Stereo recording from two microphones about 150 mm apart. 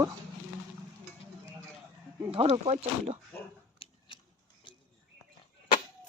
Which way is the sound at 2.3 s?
45° right (ahead or behind).